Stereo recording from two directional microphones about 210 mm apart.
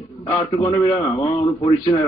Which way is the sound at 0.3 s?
15° left (ahead or behind).